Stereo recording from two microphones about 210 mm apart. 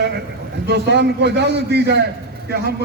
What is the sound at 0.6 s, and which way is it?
A man's voice, 55° right (ahead or behind).